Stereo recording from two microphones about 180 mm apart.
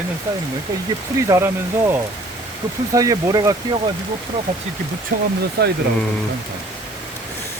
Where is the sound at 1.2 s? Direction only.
15° right (ahead or behind).